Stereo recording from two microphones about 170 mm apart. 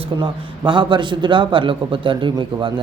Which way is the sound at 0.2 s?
30° right (ahead or behind).